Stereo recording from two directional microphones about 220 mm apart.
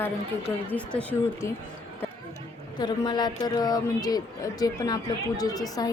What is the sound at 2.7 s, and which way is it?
A woman's voice, 20° left (ahead or behind).